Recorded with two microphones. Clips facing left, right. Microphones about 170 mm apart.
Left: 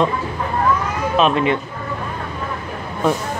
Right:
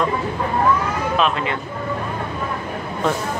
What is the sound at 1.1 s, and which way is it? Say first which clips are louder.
Speech: left 6 dB; 20° left (ahead or behind).